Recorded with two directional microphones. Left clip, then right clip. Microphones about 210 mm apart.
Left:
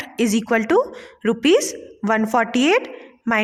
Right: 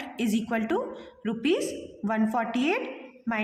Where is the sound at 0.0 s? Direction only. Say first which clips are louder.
Left 9 dB; 50° left (ahead or behind).